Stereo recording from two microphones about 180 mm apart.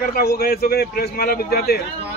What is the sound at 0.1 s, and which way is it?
A man's voice, 60° left (ahead or behind).